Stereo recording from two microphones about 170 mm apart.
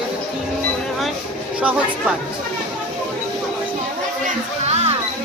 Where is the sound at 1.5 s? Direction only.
5° right (ahead or behind).